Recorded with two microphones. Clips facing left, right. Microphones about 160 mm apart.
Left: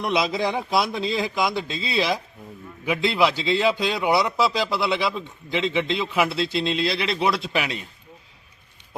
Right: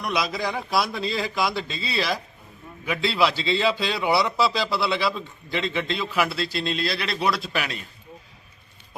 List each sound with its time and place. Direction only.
0.0 s a man's voice: 25° left (ahead or behind)
3.9 s a man's voice: centre (ahead or behind)
4.3 s a man's voice: 15° left (ahead or behind)